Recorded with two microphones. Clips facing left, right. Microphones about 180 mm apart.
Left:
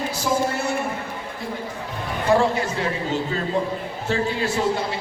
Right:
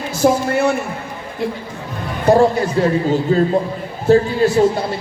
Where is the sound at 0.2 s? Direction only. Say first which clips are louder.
Right 10 dB; 60° right (ahead or behind).